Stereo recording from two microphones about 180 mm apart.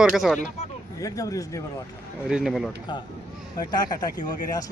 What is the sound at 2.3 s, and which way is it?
Speech, centre (ahead or behind).